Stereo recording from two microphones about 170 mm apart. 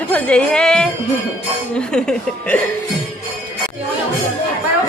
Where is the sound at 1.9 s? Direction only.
5° left (ahead or behind).